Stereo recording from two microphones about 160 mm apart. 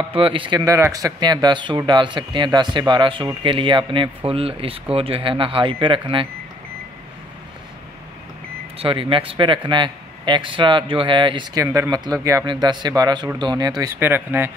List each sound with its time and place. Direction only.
0.1 s speech: 35° right (ahead or behind)
0.6 s speech: 20° right (ahead or behind)
8.7 s speech: 35° right (ahead or behind)
11.6 s speech: 15° right (ahead or behind)
13.9 s speech: 15° right (ahead or behind)